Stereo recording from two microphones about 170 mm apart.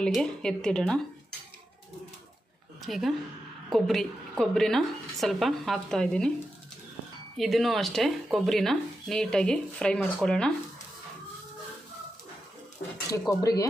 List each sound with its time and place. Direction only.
0.0 s speech: 5° left (ahead or behind)
2.8 s speech: centre (ahead or behind)
7.3 s speech: centre (ahead or behind)
13.1 s speech: 20° left (ahead or behind)